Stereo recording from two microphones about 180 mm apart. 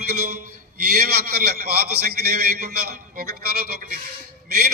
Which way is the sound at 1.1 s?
60° right (ahead or behind).